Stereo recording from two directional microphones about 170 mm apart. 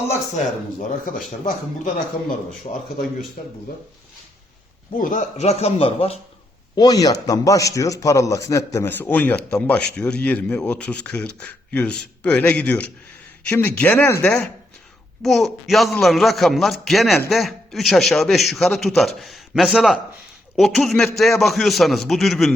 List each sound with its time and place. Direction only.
0.8 s a man's voice: 50° left (ahead or behind)
4.9 s a man's voice: 50° left (ahead or behind)
6.7 s a man's voice: 20° left (ahead or behind)
15.2 s a man's voice: centre (ahead or behind)